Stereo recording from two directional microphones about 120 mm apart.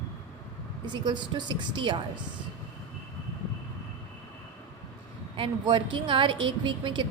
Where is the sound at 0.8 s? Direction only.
40° right (ahead or behind).